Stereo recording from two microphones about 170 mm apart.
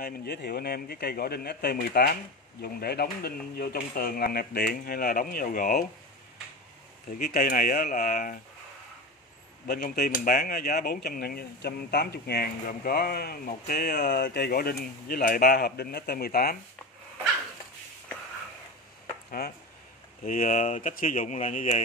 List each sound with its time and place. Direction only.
0.0 s speech: 70° left (ahead or behind)
7.2 s speech: 60° left (ahead or behind)
9.7 s speech: 65° left (ahead or behind)
19.4 s speech: 70° left (ahead or behind)
20.2 s speech: 50° left (ahead or behind)